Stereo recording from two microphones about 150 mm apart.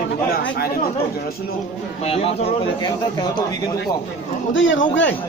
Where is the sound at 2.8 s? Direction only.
30° left (ahead or behind).